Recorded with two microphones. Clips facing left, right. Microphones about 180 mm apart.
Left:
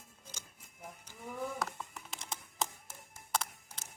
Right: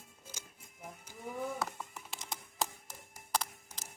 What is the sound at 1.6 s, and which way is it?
Computer keyboard, centre (ahead or behind).